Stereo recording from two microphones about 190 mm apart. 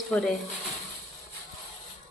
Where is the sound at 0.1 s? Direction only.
5° left (ahead or behind).